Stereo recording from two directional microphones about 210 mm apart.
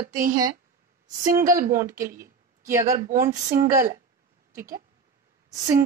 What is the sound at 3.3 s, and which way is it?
Speech, 15° right (ahead or behind).